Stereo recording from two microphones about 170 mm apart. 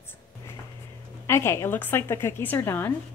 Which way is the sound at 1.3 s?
15° left (ahead or behind).